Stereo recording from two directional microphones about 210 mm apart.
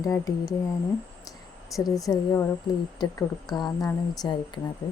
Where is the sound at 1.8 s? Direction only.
15° left (ahead or behind).